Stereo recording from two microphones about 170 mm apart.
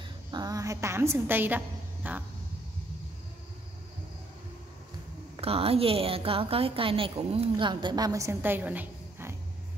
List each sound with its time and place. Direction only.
0.3 s a woman's voice: 20° right (ahead or behind)
2.0 s a sound: 10° right (ahead or behind)
5.4 s a woman's voice: 35° right (ahead or behind); by 9.3 s 10° right (ahead or behind)